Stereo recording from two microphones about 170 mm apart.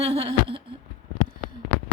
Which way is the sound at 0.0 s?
35° right (ahead or behind).